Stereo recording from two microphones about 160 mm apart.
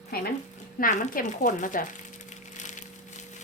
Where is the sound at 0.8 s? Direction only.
55° left (ahead or behind).